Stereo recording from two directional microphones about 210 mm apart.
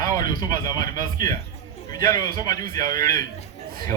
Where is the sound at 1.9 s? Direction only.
20° left (ahead or behind).